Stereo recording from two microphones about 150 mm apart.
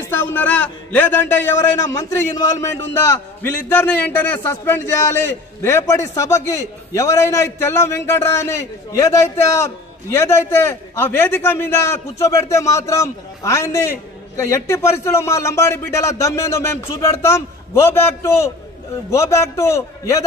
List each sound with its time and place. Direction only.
0.0 s a man's voice: 15° left (ahead or behind)